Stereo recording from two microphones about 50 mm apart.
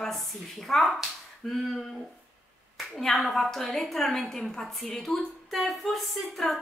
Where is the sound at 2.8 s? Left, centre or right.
Centre.